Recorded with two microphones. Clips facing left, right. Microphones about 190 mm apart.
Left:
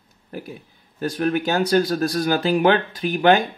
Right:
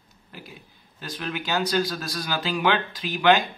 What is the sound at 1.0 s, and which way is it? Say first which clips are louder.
Speech: left 11 dB; 50° left (ahead or behind).